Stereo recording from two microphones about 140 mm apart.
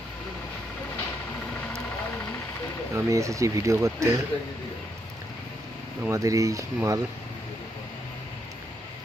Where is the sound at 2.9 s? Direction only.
20° right (ahead or behind).